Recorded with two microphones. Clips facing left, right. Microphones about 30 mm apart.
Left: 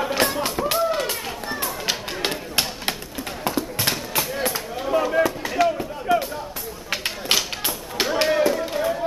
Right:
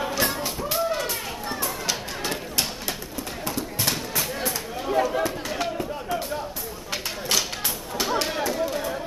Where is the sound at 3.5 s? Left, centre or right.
Left.